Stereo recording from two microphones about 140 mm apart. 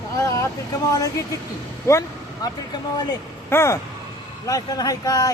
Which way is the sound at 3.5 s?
20° left (ahead or behind).